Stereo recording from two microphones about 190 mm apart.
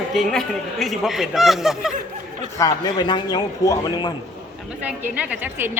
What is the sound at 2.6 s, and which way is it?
A man's voice, 20° left (ahead or behind).